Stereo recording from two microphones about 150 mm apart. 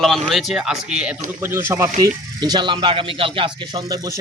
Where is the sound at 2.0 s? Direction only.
30° right (ahead or behind).